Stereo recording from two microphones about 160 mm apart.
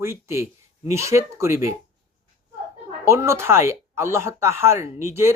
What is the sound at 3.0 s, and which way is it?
Speech, 15° right (ahead or behind).